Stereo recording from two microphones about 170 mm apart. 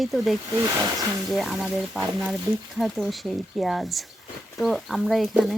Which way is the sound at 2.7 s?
Centre (ahead or behind).